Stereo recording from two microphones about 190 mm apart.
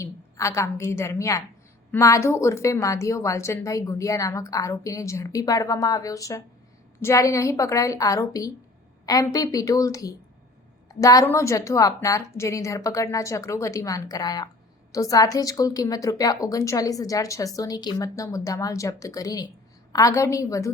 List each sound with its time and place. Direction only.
0.0 s a woman's voice: 15° left (ahead or behind)